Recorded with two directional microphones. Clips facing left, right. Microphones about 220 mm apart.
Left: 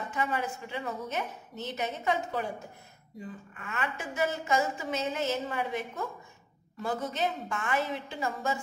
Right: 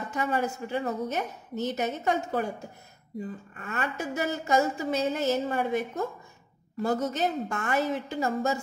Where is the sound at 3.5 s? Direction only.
40° right (ahead or behind).